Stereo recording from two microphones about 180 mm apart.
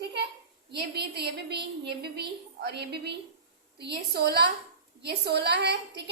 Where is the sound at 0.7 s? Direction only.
65° right (ahead or behind).